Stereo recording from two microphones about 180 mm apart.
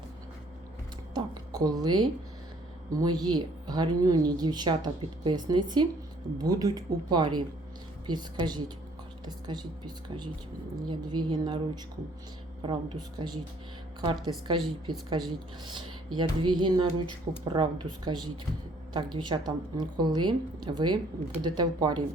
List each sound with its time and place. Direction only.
1.1 s a woman's voice: 20° right (ahead or behind)
12.6 s speech: 25° right (ahead or behind)